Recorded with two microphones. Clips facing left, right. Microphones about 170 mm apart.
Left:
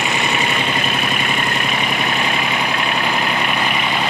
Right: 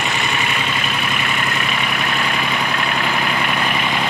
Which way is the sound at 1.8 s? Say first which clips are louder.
Left 2 dB; 25° left (ahead or behind).